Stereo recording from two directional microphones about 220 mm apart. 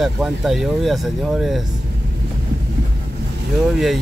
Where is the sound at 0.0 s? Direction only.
Centre (ahead or behind).